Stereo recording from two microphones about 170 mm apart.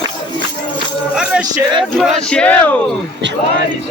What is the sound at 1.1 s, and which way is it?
Music, 5° right (ahead or behind).